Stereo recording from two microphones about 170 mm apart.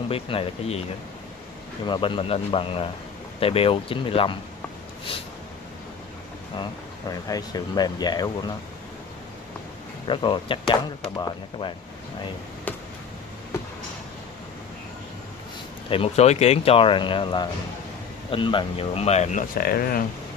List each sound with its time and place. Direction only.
0.1 s speech: 35° left (ahead or behind)
1.9 s speech: 30° left (ahead or behind)
6.5 s speech: 25° left (ahead or behind)
10.0 s speech: 30° left (ahead or behind)
12.7 s a sound: 10° left (ahead or behind)
15.9 s speech: 35° left (ahead or behind); by 20.1 s 60° left (ahead or behind)